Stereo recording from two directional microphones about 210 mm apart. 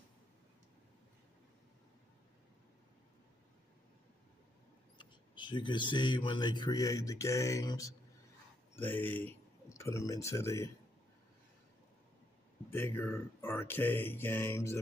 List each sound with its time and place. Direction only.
4.9 s speech: 20° left (ahead or behind)
12.6 s speech: 10° left (ahead or behind)